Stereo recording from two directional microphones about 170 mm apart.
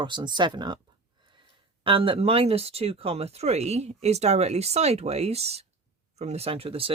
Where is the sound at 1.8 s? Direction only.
30° right (ahead or behind).